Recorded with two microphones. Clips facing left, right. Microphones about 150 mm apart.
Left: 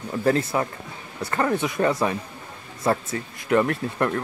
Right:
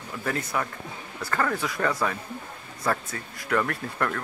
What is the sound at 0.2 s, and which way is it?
Speech, 30° left (ahead or behind).